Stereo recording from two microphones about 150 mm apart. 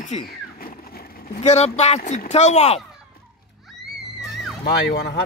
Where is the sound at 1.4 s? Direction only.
50° left (ahead or behind).